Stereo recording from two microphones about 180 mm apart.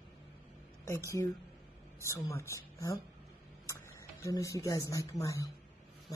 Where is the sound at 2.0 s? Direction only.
15° left (ahead or behind).